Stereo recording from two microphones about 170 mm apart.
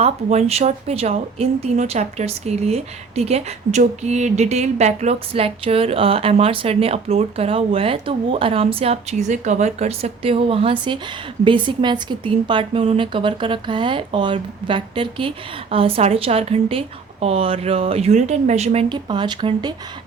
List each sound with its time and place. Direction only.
0.0 s a woman's voice: 40° right (ahead or behind)